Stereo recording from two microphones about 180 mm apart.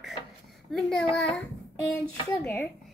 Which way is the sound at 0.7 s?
5° left (ahead or behind).